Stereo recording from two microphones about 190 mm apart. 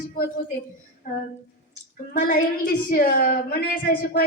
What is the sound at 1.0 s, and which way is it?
Speech, 40° left (ahead or behind).